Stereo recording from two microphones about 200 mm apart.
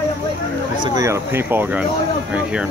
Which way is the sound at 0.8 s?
15° right (ahead or behind).